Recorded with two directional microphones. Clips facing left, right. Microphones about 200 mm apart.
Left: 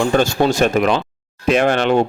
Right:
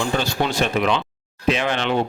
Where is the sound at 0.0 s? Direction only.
50° left (ahead or behind).